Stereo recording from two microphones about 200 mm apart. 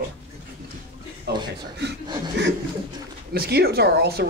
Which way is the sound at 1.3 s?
55° right (ahead or behind).